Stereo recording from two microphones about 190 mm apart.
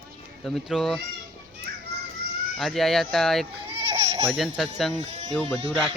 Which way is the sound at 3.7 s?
30° right (ahead or behind).